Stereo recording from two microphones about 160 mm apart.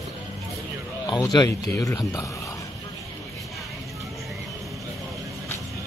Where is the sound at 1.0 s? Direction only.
25° left (ahead or behind).